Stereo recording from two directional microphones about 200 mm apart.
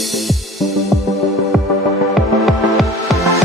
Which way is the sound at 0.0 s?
Centre (ahead or behind).